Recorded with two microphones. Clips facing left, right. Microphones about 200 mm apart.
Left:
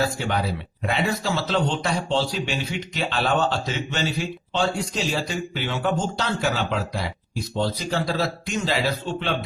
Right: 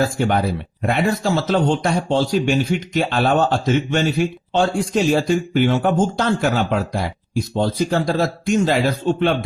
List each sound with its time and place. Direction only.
0.0 s speech: 50° right (ahead or behind)